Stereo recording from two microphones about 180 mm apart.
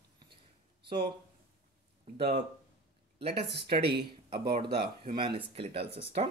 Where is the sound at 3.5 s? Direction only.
65° right (ahead or behind).